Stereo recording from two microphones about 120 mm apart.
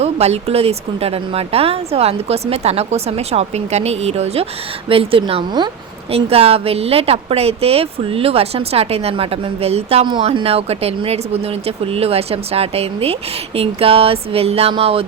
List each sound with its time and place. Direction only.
0.0 s speech: 60° right (ahead or behind)
4.9 s speech: 50° right (ahead or behind)
6.1 s speech: 55° right (ahead or behind)
10.1 s speech: 45° right (ahead or behind)